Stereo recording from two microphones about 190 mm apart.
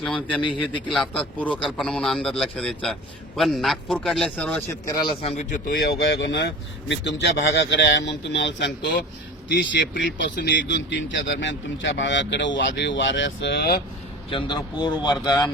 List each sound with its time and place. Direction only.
0.0 s a man's voice: 5° left (ahead or behind)
0.4 s speech: 25° left (ahead or behind)
0.9 s a man's voice: 5° left (ahead or behind)
4.7 s speech: 20° left (ahead or behind)
5.6 s speech: 55° left (ahead or behind)
14.3 s speech: 25° left (ahead or behind)